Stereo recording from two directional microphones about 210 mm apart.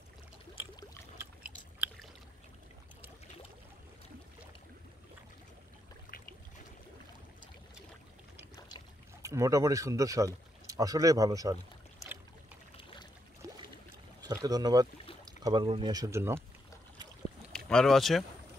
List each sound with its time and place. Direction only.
1.4 s a sound: 5° right (ahead or behind)
8.5 s boat: 20° left (ahead or behind)
9.2 s speech: 15° right (ahead or behind)
14.2 s speech: 15° right (ahead or behind)
17.6 s speech: centre (ahead or behind)